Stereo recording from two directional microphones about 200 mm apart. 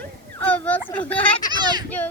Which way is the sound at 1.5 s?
20° right (ahead or behind).